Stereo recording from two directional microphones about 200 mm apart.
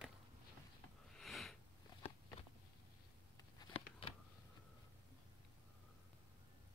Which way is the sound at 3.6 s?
25° left (ahead or behind).